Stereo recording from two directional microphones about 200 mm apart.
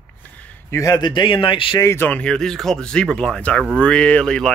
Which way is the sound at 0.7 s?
15° left (ahead or behind).